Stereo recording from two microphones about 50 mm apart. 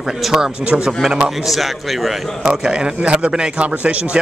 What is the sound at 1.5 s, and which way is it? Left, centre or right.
Speech, centre.